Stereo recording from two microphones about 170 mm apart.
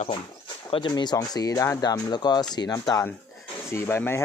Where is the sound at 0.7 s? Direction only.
25° left (ahead or behind).